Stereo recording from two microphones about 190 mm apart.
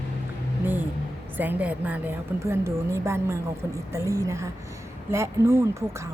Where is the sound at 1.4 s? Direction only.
10° right (ahead or behind).